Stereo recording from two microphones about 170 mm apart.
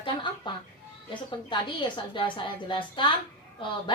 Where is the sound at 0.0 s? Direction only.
30° left (ahead or behind).